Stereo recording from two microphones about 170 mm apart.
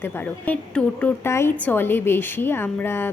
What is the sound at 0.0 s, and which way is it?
A woman's voice, 10° left (ahead or behind).